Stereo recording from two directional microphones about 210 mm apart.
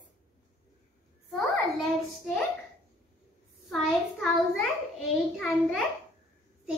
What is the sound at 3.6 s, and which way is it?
A child's voice, centre (ahead or behind).